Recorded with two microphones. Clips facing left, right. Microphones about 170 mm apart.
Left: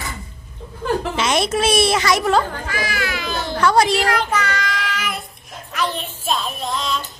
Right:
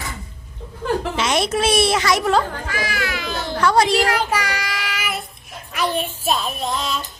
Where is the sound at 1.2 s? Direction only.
20° left (ahead or behind).